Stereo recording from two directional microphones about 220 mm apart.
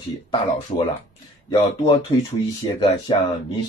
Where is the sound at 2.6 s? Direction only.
20° left (ahead or behind).